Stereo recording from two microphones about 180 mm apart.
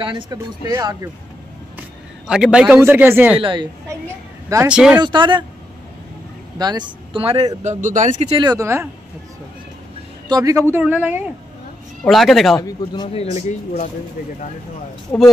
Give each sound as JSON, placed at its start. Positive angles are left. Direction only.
{"t": 0.0, "sound": "speech", "side_deg": -25}
{"t": 1.8, "sound": "a man's voice", "side_deg": -5}
{"t": 3.3, "sound": "speech", "side_deg": -25}
{"t": 4.5, "sound": "speech", "side_deg": -10}
{"t": 5.0, "sound": "speech", "side_deg": -25}
{"t": 6.6, "sound": "speech", "side_deg": -25}
{"t": 7.8, "sound": "speech", "side_deg": -45}
{"t": 8.4, "sound": "speech", "side_deg": -20}
{"t": 10.2, "sound": "speech", "side_deg": -20}
{"t": 10.7, "sound": "speech", "side_deg": -10}
{"t": 12.0, "sound": "speech", "side_deg": 0}
{"t": 12.5, "sound": "speech", "side_deg": 20}
{"t": 15.1, "sound": "speech", "side_deg": 15}